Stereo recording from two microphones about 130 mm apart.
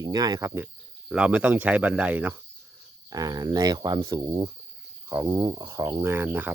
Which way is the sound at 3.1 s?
30° right (ahead or behind).